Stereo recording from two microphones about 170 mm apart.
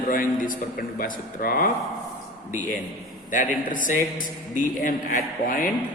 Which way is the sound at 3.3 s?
50° left (ahead or behind).